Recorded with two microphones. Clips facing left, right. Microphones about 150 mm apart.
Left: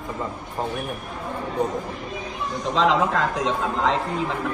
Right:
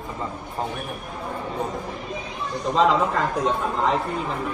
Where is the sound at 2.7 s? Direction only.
90° left.